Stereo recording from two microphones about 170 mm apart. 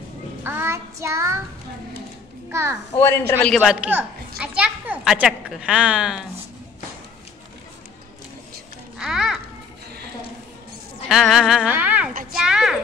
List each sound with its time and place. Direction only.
0.4 s child singing: 10° right (ahead or behind)
2.5 s a child's voice: 15° right (ahead or behind)
3.0 s a man's voice: 10° left (ahead or behind)
4.4 s a child's voice: 5° right (ahead or behind)
8.9 s children playing: centre (ahead or behind)
11.1 s a sound: centre (ahead or behind)